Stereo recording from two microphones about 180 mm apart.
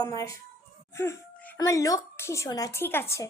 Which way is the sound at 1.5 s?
20° left (ahead or behind).